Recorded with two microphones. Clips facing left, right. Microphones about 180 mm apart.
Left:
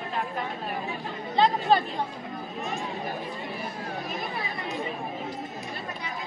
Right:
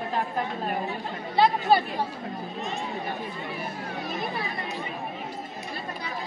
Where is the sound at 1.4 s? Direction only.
10° right (ahead or behind).